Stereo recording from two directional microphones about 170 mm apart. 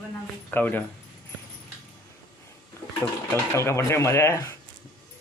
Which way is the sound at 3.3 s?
15° left (ahead or behind).